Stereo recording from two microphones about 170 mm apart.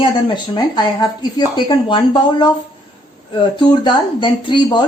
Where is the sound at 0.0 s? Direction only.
25° left (ahead or behind).